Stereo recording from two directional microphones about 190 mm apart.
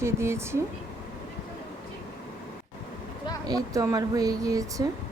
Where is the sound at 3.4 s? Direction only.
20° right (ahead or behind).